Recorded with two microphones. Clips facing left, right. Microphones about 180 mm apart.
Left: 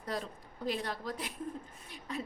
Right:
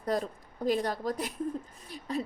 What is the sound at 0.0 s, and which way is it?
A woman's voice, 45° right (ahead or behind).